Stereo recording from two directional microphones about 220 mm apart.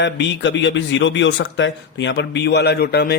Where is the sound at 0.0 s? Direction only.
55° left (ahead or behind).